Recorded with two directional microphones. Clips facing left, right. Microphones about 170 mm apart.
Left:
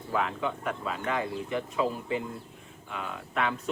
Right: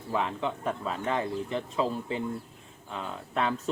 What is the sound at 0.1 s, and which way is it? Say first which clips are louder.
Speech: even; 25° right (ahead or behind).